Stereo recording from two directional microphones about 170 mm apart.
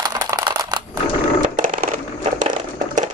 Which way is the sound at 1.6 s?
55° right (ahead or behind).